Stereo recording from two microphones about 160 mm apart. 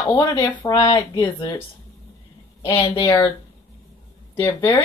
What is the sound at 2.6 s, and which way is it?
Speech, 35° left (ahead or behind).